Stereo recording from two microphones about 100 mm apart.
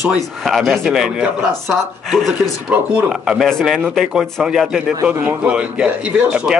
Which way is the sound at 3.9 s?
5° right (ahead or behind).